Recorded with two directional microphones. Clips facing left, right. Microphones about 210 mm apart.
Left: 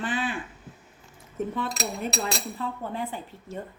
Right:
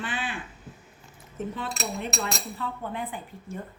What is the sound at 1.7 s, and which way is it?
A woman's voice, 40° left (ahead or behind).